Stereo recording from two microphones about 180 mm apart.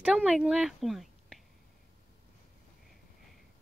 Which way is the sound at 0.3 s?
5° right (ahead or behind).